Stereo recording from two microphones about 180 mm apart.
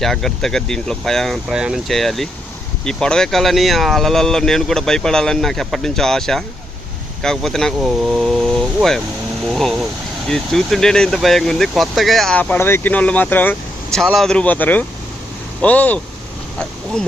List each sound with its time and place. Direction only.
0.0 s speech: centre (ahead or behind)